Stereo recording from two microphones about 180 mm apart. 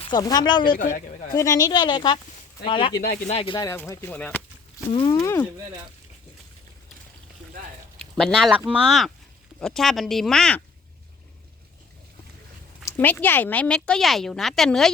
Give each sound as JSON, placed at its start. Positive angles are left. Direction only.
{"t": 0.0, "sound": "speech", "side_deg": 20}
{"t": 0.7, "sound": "speech", "side_deg": 50}
{"t": 1.3, "sound": "speech", "side_deg": 20}
{"t": 3.7, "sound": "speech", "side_deg": 15}
{"t": 4.9, "sound": "speech", "side_deg": 30}
{"t": 7.9, "sound": "speech", "side_deg": 5}
{"t": 12.8, "sound": "speech", "side_deg": 10}